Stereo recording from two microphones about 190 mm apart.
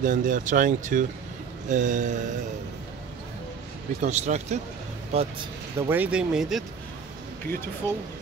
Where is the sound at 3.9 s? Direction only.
40° right (ahead or behind).